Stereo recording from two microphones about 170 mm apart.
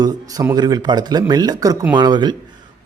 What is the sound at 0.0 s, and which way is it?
A man's voice, 20° right (ahead or behind).